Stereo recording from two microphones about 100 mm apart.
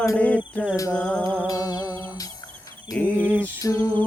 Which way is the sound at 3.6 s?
35° left (ahead or behind).